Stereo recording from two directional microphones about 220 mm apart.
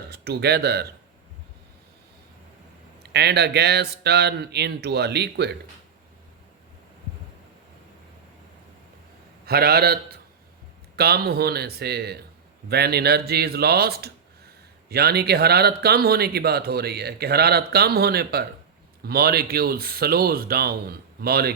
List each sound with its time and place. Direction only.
0.1 s speech: 45° right (ahead or behind)
3.0 s speech: 50° right (ahead or behind)
9.5 s speech: 45° right (ahead or behind)